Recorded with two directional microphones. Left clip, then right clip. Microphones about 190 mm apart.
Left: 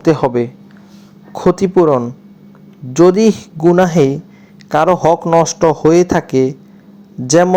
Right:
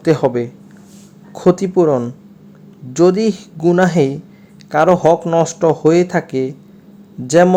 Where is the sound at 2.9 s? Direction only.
10° left (ahead or behind).